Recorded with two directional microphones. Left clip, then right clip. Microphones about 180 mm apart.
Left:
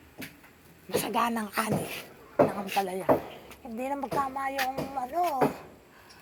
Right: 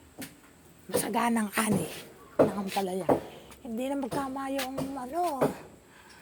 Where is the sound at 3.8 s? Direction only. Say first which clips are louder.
Left 2 dB; 60° right (ahead or behind).